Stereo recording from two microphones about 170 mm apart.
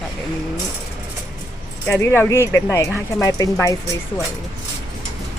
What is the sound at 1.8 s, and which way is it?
Speech, 15° left (ahead or behind).